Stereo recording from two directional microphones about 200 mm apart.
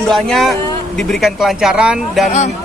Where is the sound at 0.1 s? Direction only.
Centre (ahead or behind).